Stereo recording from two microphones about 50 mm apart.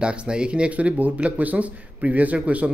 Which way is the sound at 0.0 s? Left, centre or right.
Centre.